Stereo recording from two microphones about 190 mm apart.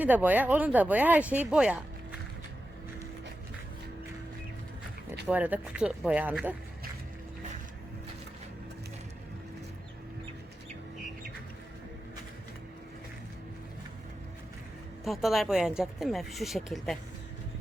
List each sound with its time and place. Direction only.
0.0 s speech: 10° right (ahead or behind)
5.3 s speech: 10° right (ahead or behind)
15.0 s speech: centre (ahead or behind)